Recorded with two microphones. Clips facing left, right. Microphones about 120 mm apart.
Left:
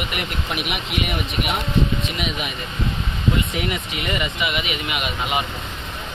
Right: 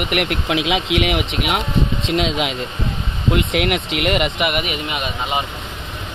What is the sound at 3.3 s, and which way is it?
Speech, 75° right (ahead or behind).